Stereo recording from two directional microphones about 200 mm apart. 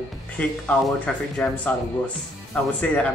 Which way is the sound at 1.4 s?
5° left (ahead or behind).